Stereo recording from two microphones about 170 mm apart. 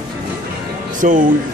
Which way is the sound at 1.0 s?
50° right (ahead or behind).